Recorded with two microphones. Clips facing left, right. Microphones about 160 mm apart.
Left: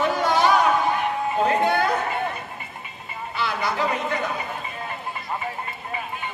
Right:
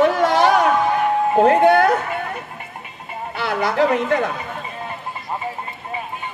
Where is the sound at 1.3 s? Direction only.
60° right (ahead or behind).